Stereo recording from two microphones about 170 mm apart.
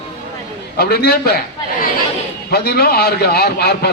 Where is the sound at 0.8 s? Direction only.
65° left (ahead or behind).